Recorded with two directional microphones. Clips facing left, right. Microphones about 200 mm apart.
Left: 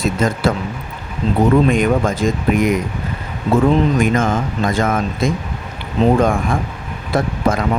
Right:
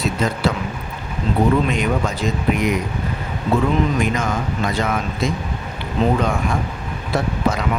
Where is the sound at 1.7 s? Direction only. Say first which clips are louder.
Left 5 dB; 50° left (ahead or behind).